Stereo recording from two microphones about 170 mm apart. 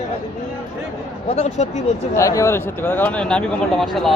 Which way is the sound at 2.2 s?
15° left (ahead or behind).